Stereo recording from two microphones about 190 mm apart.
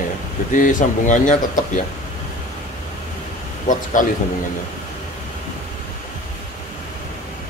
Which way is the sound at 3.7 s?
40° left (ahead or behind).